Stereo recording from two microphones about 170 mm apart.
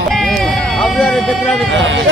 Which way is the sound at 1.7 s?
90° right.